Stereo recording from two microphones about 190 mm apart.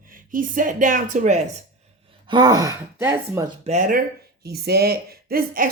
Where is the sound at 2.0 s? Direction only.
25° right (ahead or behind).